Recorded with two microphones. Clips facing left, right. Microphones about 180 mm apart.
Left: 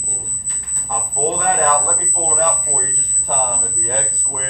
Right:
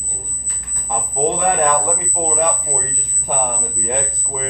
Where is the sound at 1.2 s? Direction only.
15° right (ahead or behind).